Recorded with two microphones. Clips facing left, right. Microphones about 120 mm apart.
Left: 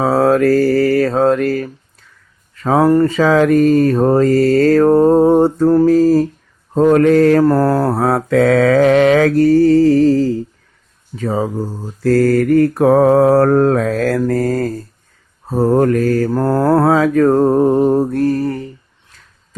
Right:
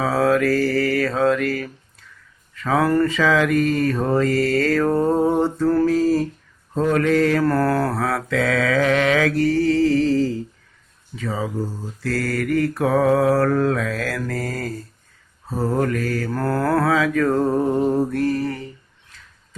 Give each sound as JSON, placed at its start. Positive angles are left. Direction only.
{"t": 0.0, "sound": "mantra", "side_deg": 35}
{"t": 7.4, "sound": "mantra", "side_deg": 25}
{"t": 16.3, "sound": "mantra", "side_deg": 25}